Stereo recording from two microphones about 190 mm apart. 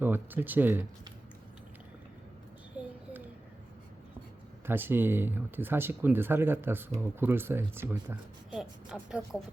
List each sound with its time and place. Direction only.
0.0 s speech: 10° right (ahead or behind)
2.7 s a sound: 10° right (ahead or behind)
4.6 s speech: 10° right (ahead or behind)